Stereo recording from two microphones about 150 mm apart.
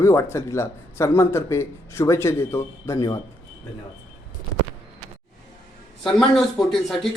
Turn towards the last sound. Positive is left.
turn(degrees=0)  # may be behind; listen again after turning